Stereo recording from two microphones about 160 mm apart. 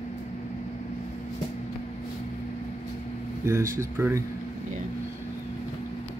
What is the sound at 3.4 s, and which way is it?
Speech, 15° right (ahead or behind).